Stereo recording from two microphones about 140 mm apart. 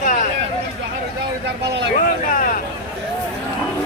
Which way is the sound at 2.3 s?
75° left (ahead or behind).